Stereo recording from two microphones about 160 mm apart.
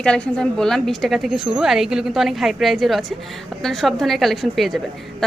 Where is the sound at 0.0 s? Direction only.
5° left (ahead or behind).